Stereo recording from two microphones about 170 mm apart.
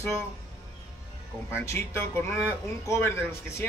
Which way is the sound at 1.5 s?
15° left (ahead or behind).